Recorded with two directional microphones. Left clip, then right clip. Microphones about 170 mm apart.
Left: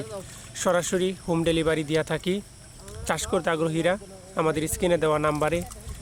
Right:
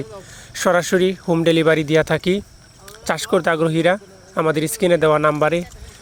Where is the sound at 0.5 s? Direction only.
30° right (ahead or behind).